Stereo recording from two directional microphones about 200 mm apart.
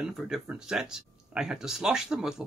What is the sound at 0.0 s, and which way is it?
Speech, centre (ahead or behind).